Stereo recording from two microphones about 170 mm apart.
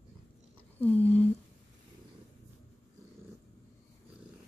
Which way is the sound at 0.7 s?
10° left (ahead or behind).